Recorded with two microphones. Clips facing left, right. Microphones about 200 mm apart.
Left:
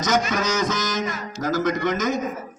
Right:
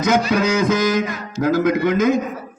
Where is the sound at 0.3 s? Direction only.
60° right (ahead or behind).